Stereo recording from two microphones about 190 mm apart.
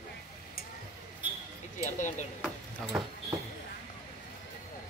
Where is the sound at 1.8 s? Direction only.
40° left (ahead or behind).